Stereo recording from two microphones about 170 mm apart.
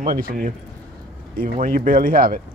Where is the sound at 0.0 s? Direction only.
55° right (ahead or behind).